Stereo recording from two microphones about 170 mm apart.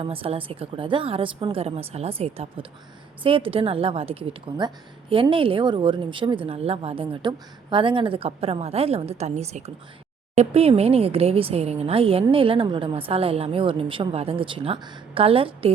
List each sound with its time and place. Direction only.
0.0 s a woman's voice: 35° right (ahead or behind)